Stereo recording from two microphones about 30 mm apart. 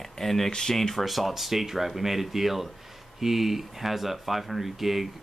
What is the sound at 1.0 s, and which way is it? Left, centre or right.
Speech, centre.